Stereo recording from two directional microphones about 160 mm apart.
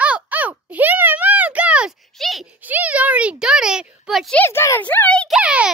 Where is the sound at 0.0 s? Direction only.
10° right (ahead or behind).